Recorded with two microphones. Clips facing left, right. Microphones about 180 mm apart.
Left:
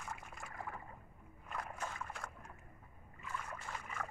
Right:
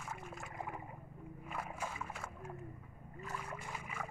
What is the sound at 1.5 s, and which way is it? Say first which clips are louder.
Boat: right 1 dB; 5° right (ahead or behind).